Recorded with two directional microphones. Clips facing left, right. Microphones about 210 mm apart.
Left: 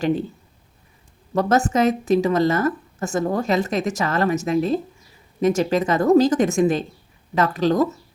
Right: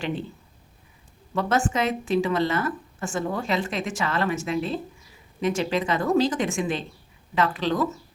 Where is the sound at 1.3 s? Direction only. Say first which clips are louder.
Left 5 dB; 40° left (ahead or behind).